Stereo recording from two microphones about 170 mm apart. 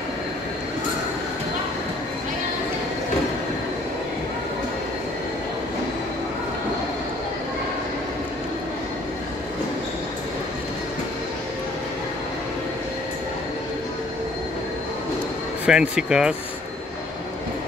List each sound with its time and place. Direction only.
15.6 s speech: 5° right (ahead or behind)